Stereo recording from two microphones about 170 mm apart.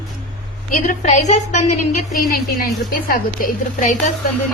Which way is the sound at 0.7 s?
50° left (ahead or behind).